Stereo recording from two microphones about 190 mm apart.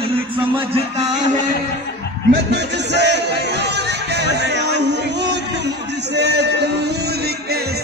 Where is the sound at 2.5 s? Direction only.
60° right (ahead or behind).